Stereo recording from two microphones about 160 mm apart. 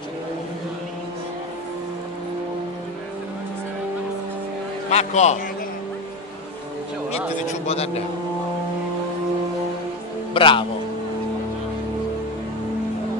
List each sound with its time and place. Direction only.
4.8 s speech: 45° left (ahead or behind)
7.6 s speech: 40° left (ahead or behind)
10.3 s speech: 30° left (ahead or behind)